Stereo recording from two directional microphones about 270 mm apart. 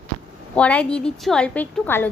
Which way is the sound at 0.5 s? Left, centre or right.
Centre.